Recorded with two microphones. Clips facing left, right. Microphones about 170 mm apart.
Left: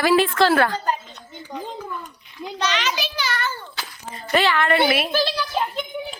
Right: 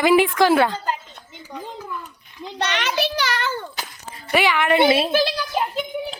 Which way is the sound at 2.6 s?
60° right (ahead or behind).